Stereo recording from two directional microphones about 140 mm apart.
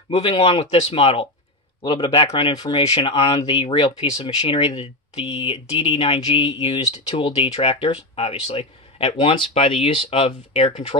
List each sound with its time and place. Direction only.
0.1 s speech: 40° left (ahead or behind)